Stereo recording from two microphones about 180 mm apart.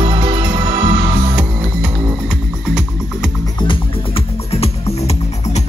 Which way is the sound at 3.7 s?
35° left (ahead or behind).